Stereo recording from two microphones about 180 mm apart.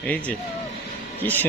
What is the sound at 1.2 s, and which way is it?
Speech, 10° left (ahead or behind).